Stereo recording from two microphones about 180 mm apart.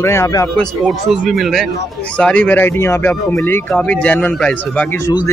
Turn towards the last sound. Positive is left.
turn(degrees=5)  # may be behind; listen again after turning